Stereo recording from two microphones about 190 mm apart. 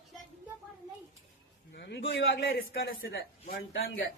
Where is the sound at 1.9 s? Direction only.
60° left (ahead or behind); by 4.0 s 80° left.